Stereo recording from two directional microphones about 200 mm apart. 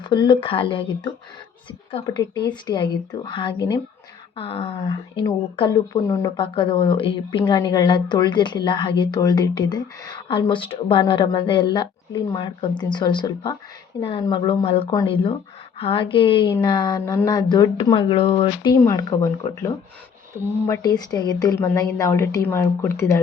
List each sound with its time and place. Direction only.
0.0 s a woman's voice: 20° left (ahead or behind)